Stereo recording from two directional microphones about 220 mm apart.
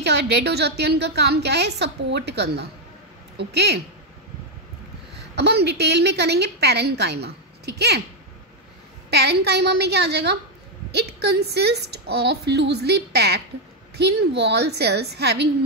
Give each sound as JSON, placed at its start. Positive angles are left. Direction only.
{"t": 0.0, "sound": "a woman's voice", "side_deg": -50}
{"t": 5.3, "sound": "a woman's voice", "side_deg": -50}
{"t": 9.1, "sound": "a woman's voice", "side_deg": -50}